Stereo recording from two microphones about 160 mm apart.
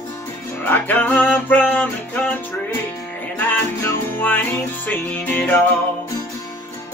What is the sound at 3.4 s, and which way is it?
Music, 10° left (ahead or behind).